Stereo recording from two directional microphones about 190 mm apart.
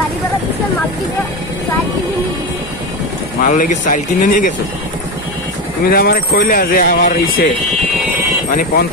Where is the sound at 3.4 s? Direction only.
45° left (ahead or behind).